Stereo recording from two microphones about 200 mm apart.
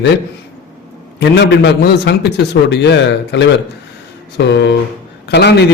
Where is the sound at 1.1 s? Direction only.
60° left (ahead or behind).